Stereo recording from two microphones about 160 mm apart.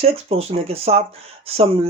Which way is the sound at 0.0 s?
40° right (ahead or behind).